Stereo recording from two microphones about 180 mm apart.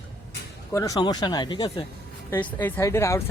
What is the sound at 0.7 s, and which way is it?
Speech, 20° left (ahead or behind).